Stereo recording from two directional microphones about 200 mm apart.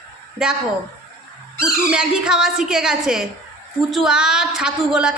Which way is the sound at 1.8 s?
5° right (ahead or behind).